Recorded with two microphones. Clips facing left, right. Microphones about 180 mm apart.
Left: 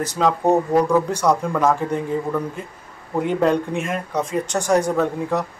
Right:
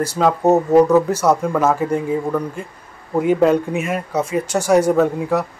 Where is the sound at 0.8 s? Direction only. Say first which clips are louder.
Right 3 dB; 5° right (ahead or behind).